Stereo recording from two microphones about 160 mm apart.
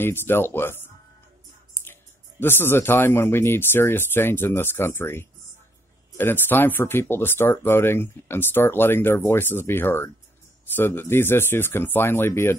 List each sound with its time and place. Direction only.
0.0 s speech: 15° left (ahead or behind)
2.4 s speech: 15° left (ahead or behind)